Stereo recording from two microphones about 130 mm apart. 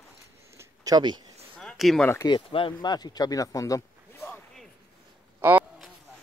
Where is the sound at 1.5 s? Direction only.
Centre (ahead or behind).